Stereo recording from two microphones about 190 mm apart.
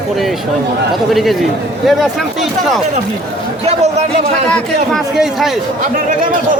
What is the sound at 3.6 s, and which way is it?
Speech, 35° right (ahead or behind).